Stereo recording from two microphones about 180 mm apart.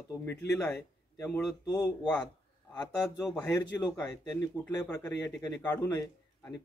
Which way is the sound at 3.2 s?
10° left (ahead or behind).